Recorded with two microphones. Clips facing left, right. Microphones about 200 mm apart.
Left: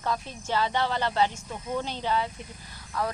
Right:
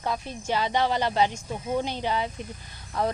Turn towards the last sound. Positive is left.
turn(degrees=-25)  # may be behind; listen again after turning